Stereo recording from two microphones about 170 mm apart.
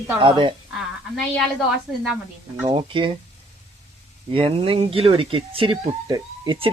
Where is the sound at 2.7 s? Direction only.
30° right (ahead or behind).